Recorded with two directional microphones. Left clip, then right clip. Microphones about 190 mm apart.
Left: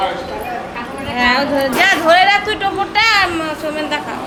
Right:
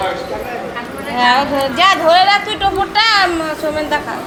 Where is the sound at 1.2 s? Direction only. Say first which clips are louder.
Right 2 dB; 5° left (ahead or behind).